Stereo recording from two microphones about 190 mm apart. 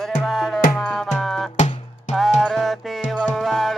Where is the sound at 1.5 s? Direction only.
35° left (ahead or behind).